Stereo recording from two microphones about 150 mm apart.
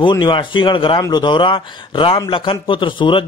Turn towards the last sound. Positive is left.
turn(degrees=35)  # may be behind; listen again after turning